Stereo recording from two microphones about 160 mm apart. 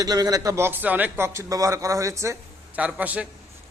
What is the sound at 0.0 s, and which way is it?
A man's voice, 25° right (ahead or behind).